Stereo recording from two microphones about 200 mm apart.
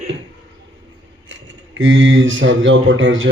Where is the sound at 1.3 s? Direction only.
70° right (ahead or behind).